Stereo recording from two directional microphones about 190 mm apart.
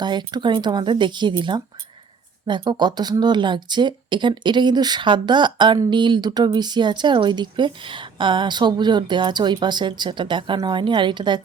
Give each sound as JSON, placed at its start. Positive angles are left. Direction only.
{"t": 0.0, "sound": "speech", "side_deg": -25}